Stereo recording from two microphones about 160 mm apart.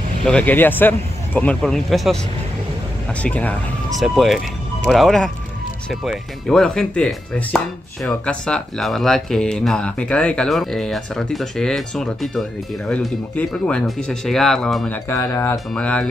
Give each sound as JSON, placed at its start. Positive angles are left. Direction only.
{"t": 0.2, "sound": "speech", "side_deg": 5}
{"t": 3.2, "sound": "speech", "side_deg": 10}
{"t": 4.0, "sound": "speech", "side_deg": 0}
{"t": 15.0, "sound": "speech", "side_deg": 20}
{"t": 15.7, "sound": "speech", "side_deg": 5}